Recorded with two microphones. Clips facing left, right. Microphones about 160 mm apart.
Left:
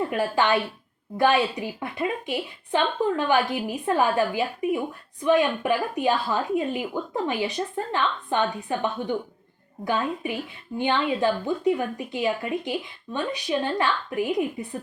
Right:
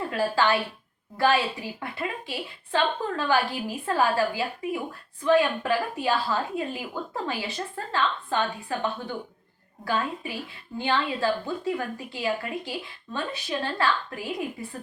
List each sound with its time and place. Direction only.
0.1 s a woman's voice: 20° left (ahead or behind)